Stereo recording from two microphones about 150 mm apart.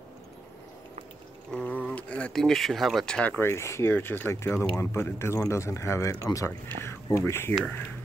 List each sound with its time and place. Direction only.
1.5 s speech: 10° left (ahead or behind)